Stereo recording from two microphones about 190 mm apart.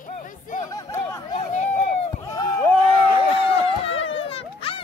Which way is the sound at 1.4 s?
40° left (ahead or behind).